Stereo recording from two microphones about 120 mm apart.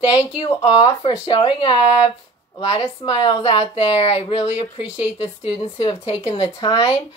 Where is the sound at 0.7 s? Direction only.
50° left (ahead or behind).